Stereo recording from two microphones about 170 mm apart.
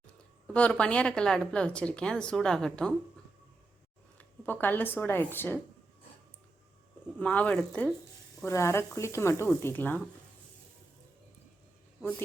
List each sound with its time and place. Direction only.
0.4 s speech: 5° left (ahead or behind)
4.2 s speech: 10° left (ahead or behind)
7.2 s speech: 10° left (ahead or behind)